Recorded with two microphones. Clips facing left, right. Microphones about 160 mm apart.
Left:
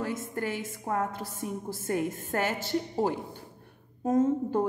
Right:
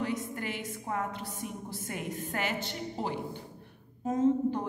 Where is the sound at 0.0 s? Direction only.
45° left (ahead or behind).